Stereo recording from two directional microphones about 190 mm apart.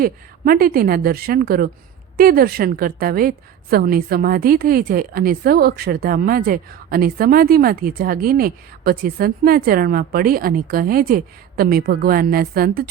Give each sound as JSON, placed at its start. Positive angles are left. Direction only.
{"t": 0.0, "sound": "a woman's voice", "side_deg": -50}